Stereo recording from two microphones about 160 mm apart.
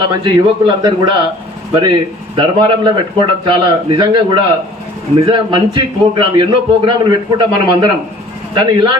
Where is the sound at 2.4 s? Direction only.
30° right (ahead or behind).